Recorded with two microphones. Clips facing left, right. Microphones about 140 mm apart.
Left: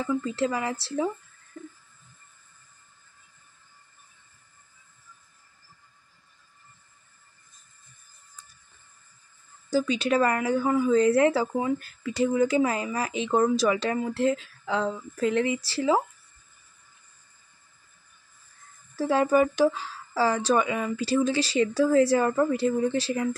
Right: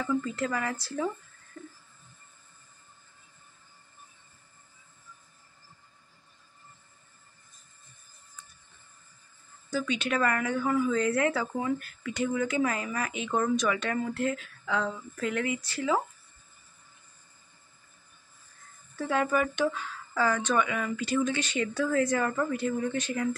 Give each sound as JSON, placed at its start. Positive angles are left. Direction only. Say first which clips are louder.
{"t": 0.0, "sound": "speech", "louder": "left 3 dB", "side_deg": 20}
{"t": 9.7, "sound": "a woman's voice", "louder": "left 6 dB", "side_deg": 35}
{"t": 18.9, "sound": "speech", "louder": "left 6 dB", "side_deg": 35}